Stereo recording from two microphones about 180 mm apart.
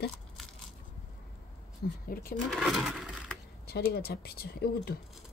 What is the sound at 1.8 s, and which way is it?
Speech, 55° left (ahead or behind).